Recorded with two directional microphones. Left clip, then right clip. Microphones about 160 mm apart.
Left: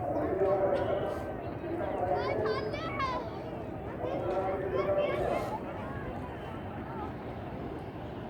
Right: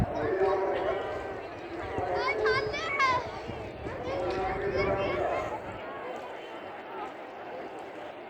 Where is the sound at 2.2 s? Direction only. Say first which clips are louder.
Right 4 dB; 10° right (ahead or behind).